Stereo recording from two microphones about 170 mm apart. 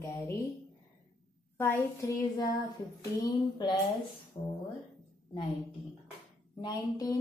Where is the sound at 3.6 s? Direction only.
25° left (ahead or behind).